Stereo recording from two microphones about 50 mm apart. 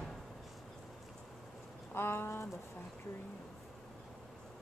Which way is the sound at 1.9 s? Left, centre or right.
Left.